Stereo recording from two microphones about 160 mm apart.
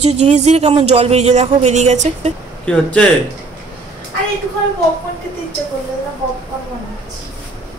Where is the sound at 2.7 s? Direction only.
5° left (ahead or behind).